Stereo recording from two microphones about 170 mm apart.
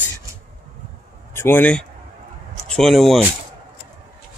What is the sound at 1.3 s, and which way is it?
Speech, 15° left (ahead or behind).